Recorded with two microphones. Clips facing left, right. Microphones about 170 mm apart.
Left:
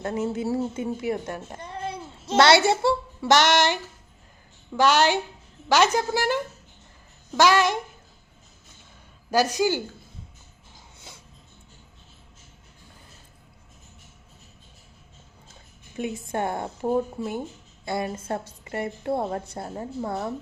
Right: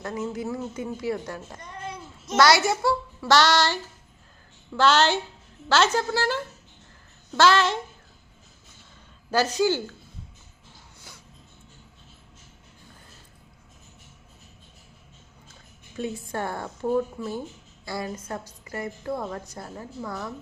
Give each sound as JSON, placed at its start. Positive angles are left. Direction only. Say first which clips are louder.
{"t": 0.0, "sound": "a woman's voice", "louder": "left 4 dB", "side_deg": 25}
{"t": 4.8, "sound": "a woman's voice", "louder": "left 1 dB", "side_deg": 15}
{"t": 9.3, "sound": "a woman's voice", "louder": "even", "side_deg": 15}
{"t": 11.1, "sound": "music", "louder": "left 2 dB", "side_deg": 20}
{"t": 16.0, "sound": "a woman's voice", "louder": "left 2 dB", "side_deg": 20}